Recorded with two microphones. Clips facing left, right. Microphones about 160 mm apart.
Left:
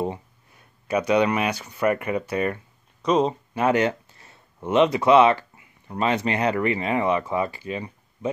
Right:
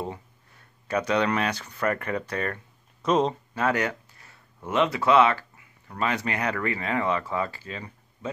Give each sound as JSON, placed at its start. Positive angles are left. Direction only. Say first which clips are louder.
{"t": 0.0, "sound": "speech", "louder": "left 6 dB", "side_deg": 15}
{"t": 3.0, "sound": "speech", "louder": "left 2 dB", "side_deg": 0}
{"t": 3.5, "sound": "speech", "louder": "left 6 dB", "side_deg": 20}